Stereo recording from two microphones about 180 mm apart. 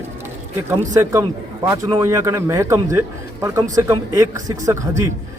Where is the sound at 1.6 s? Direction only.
20° right (ahead or behind).